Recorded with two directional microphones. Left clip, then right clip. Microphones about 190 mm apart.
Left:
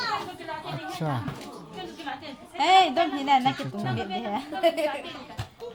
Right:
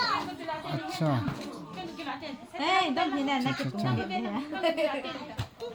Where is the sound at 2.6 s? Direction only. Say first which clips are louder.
Left 7 dB; 70° left (ahead or behind).